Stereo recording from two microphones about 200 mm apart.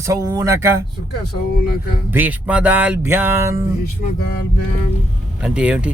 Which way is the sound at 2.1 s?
10° right (ahead or behind).